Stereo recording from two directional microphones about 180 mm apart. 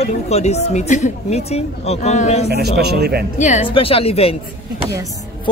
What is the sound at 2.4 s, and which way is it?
Speech, 65° right (ahead or behind).